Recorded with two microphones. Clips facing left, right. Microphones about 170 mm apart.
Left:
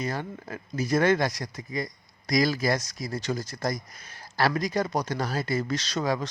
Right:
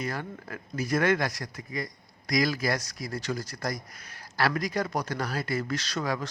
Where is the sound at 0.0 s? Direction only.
25° left (ahead or behind).